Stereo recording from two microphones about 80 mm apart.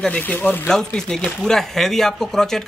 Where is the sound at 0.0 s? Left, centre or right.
Centre.